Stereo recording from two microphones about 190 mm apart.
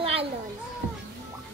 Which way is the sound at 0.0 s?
30° right (ahead or behind).